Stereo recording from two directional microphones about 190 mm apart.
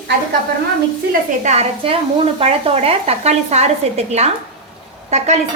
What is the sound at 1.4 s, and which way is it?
A woman's voice, 35° right (ahead or behind).